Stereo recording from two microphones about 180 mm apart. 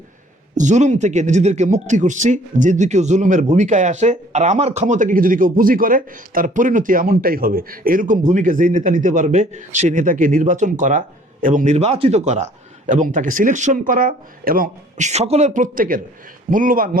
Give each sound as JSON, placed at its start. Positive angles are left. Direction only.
{"t": 0.5, "sound": "speech", "side_deg": -45}